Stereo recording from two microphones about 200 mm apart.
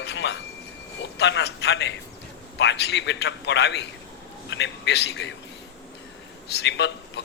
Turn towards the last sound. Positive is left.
turn(degrees=60)  # may be behind; listen again after turning